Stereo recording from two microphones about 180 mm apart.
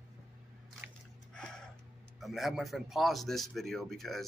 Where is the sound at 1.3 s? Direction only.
5° left (ahead or behind).